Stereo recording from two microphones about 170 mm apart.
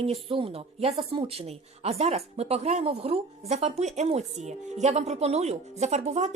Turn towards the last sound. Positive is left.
turn(degrees=-40)  # may be behind; listen again after turning